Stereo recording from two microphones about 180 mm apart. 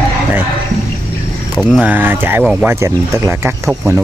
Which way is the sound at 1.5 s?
5° right (ahead or behind).